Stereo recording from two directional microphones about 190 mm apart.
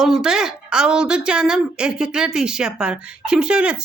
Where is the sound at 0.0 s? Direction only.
Centre (ahead or behind).